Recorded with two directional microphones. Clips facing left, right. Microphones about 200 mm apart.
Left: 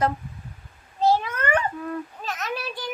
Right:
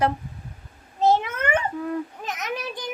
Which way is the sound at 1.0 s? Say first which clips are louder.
Right 1 dB; 20° right (ahead or behind).